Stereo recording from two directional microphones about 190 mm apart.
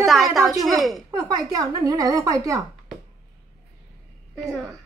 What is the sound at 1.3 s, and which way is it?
Speech, 20° right (ahead or behind).